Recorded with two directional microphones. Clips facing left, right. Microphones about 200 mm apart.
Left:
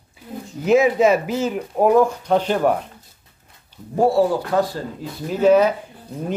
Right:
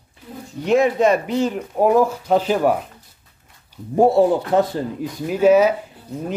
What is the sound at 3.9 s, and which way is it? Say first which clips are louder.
Speech: right 3 dB; 20° right (ahead or behind).